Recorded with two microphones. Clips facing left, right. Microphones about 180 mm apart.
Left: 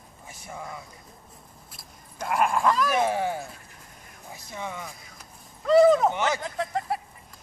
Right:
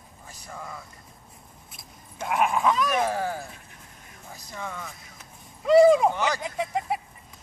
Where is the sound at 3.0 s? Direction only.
20° left (ahead or behind).